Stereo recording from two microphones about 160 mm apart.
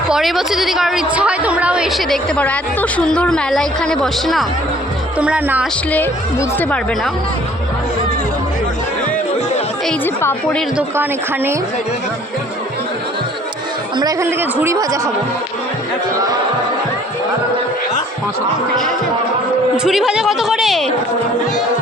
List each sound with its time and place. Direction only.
0.1 s a woman's voice: centre (ahead or behind)
5.9 s speech: 10° left (ahead or behind)
10.2 s speech: 10° left (ahead or behind)
10.8 s speech: 15° right (ahead or behind)
13.9 s speech: 25° right (ahead or behind)
19.7 s a woman's voice: 5° right (ahead or behind)